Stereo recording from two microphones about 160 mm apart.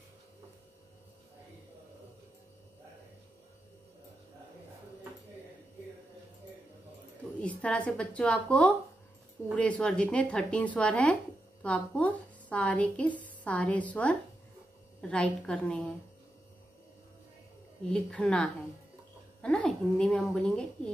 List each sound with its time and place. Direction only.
7.4 s speech: 10° left (ahead or behind)
17.8 s a woman's voice: 5° left (ahead or behind)